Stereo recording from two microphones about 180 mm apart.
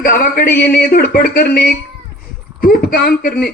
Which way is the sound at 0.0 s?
50° left (ahead or behind).